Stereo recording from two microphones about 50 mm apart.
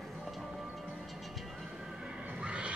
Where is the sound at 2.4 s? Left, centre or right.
Right.